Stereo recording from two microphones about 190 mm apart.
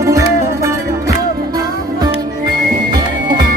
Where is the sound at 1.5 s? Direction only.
20° right (ahead or behind).